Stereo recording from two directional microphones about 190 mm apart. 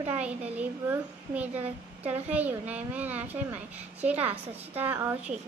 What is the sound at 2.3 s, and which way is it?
A woman's voice, 10° right (ahead or behind).